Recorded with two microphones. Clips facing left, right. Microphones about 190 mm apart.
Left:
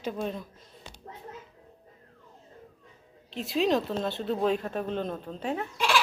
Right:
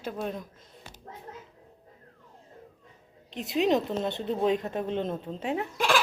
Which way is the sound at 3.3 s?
20° right (ahead or behind).